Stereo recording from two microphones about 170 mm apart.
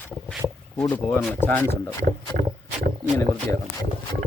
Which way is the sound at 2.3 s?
50° right (ahead or behind).